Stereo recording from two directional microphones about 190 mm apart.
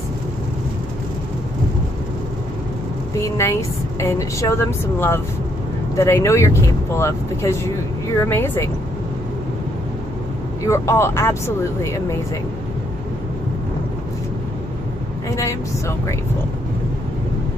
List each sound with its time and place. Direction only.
3.2 s speech: 15° left (ahead or behind)
10.6 s speech: 15° left (ahead or behind)
15.2 s speech: 15° left (ahead or behind)